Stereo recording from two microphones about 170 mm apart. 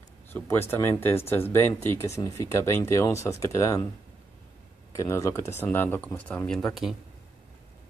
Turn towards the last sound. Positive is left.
turn(degrees=0)  # may be behind; listen again after turning